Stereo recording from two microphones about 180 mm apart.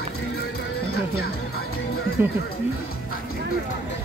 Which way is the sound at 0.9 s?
60° left (ahead or behind).